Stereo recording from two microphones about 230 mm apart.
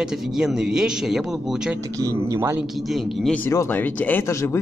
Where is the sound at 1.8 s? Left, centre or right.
Centre.